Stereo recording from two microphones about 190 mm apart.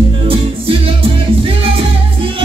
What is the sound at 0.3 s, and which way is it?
Music, 30° right (ahead or behind).